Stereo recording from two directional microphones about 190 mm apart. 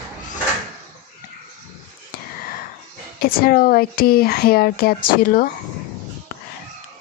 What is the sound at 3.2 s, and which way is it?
Speech, 50° left (ahead or behind).